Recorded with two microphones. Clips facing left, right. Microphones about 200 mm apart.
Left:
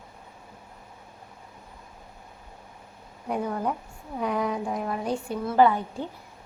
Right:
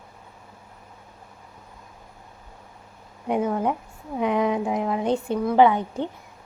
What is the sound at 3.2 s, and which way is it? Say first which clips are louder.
A woman's voice: right 5 dB; 20° right (ahead or behind).